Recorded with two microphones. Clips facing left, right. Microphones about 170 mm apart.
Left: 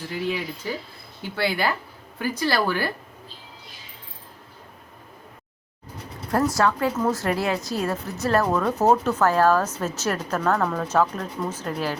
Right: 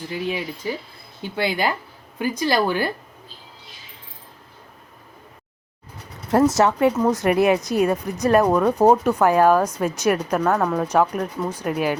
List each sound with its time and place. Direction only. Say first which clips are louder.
0.6 s speech: right 3 dB; 15° right (ahead or behind)
6.3 s speech: right 5 dB; 20° right (ahead or behind)